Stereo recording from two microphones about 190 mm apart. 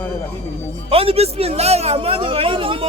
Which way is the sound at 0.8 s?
30° right (ahead or behind).